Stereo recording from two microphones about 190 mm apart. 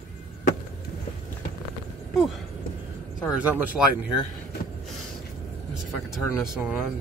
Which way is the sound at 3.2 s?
5° right (ahead or behind).